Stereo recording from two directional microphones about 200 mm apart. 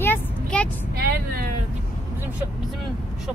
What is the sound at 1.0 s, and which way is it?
Speech, 50° right (ahead or behind).